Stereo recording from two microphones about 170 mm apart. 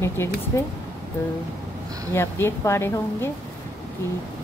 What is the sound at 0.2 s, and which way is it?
Speech, 15° left (ahead or behind).